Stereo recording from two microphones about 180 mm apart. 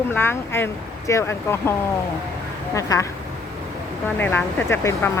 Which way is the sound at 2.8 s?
20° left (ahead or behind).